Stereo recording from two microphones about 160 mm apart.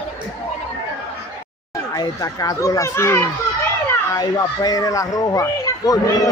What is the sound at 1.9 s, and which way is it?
A child's voice, 20° left (ahead or behind).